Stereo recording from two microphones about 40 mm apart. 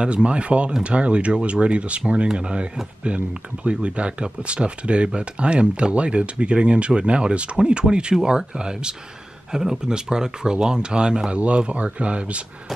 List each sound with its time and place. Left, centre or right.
0.0 s speech: right